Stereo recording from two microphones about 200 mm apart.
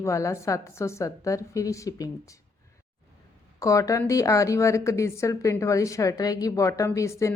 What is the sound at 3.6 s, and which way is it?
Speech, 15° left (ahead or behind).